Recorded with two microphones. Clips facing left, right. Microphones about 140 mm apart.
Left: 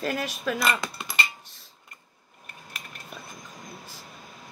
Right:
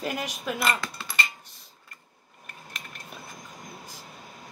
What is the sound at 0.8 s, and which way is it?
Speech, 20° left (ahead or behind).